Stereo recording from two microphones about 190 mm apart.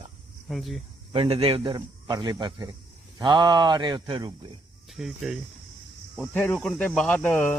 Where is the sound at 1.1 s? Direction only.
30° right (ahead or behind).